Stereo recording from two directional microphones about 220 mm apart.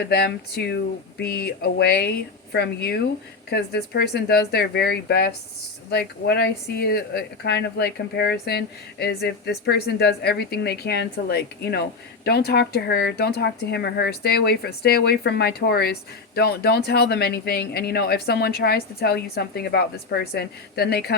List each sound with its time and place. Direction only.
0.1 s speech: 45° left (ahead or behind)